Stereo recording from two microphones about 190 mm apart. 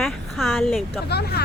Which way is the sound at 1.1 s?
60° left (ahead or behind).